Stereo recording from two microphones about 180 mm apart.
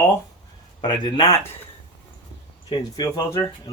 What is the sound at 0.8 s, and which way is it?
Speech, 25° left (ahead or behind).